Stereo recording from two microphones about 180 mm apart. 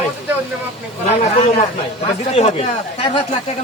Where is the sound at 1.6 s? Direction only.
35° left (ahead or behind).